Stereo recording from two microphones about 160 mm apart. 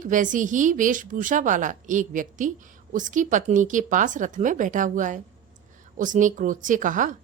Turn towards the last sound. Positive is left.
turn(degrees=-55)  # may be behind; listen again after turning